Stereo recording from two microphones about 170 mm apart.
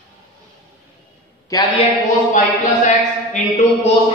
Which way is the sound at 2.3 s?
45° left (ahead or behind).